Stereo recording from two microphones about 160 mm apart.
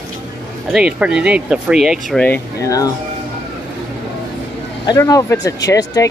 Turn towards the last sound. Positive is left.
turn(degrees=20)  # may be behind; listen again after turning